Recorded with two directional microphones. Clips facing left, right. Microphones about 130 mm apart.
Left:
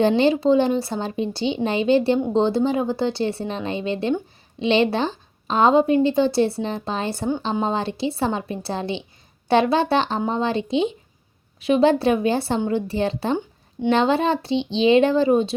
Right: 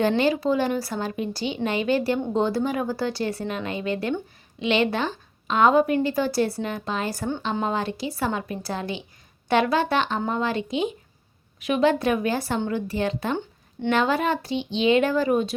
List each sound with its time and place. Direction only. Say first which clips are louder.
0.2 s a woman's voice: left 5 dB; 25° left (ahead or behind)